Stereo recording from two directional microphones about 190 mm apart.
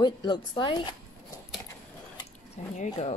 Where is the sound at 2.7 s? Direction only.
40° left (ahead or behind).